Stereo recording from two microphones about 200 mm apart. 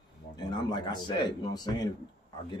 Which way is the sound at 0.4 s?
20° left (ahead or behind).